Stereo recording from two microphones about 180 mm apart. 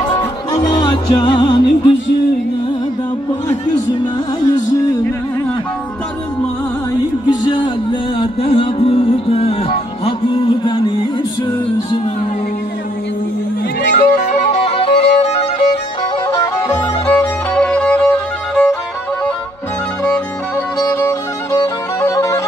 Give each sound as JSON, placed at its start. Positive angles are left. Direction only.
{"t": 0.0, "sound": "music", "side_deg": 20}
{"t": 3.6, "sound": "music", "side_deg": 25}
{"t": 7.2, "sound": "music", "side_deg": 25}
{"t": 13.9, "sound": "music", "side_deg": 40}
{"t": 16.3, "sound": "music", "side_deg": 20}
{"t": 20.8, "sound": "music", "side_deg": 15}